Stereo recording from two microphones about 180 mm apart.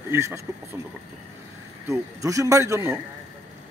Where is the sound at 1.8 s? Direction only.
15° right (ahead or behind).